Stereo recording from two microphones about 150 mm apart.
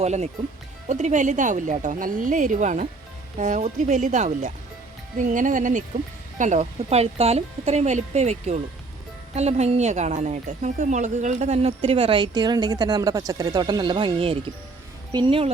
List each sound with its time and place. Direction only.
0.0 s a woman's voice: 45° right (ahead or behind)